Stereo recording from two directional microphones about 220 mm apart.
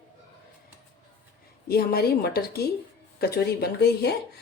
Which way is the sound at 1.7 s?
45° left (ahead or behind).